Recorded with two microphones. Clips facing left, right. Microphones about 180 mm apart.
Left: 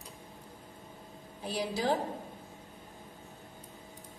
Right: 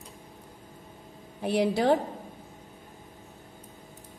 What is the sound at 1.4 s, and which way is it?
Speech, 65° right (ahead or behind).